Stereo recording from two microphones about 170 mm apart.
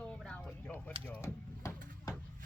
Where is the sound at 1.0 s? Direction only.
15° left (ahead or behind).